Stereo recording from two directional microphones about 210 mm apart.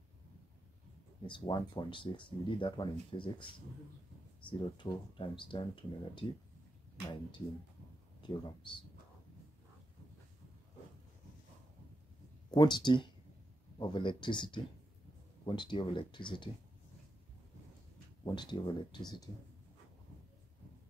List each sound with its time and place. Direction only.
1.2 s speech: 20° left (ahead or behind)
4.5 s speech: 25° left (ahead or behind)
12.4 s speech: 20° left (ahead or behind)
18.2 s speech: 20° left (ahead or behind)